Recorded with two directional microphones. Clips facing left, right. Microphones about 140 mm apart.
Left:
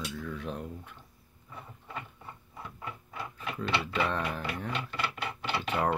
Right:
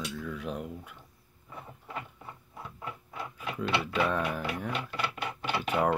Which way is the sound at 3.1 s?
10° right (ahead or behind).